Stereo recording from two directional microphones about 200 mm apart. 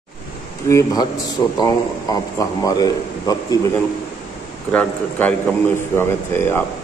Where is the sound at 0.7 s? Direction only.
15° left (ahead or behind).